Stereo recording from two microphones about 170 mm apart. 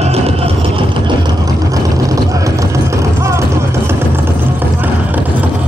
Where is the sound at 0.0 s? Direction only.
35° right (ahead or behind); by 5.2 s 10° right (ahead or behind).